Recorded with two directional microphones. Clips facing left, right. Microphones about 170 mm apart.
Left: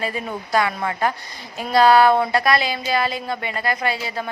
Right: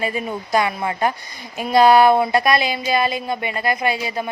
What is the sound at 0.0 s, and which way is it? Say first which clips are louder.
A woman's voice: right 2 dB; 15° right (ahead or behind).